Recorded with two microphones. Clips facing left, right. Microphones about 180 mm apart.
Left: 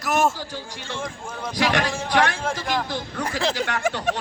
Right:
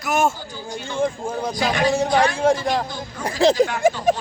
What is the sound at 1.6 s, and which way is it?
Speech, 75° left (ahead or behind).